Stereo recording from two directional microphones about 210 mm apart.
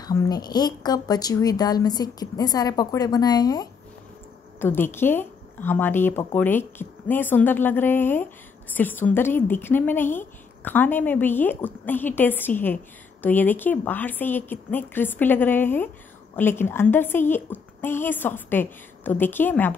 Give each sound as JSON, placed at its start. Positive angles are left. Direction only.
{"t": 0.0, "sound": "a woman's voice", "side_deg": 15}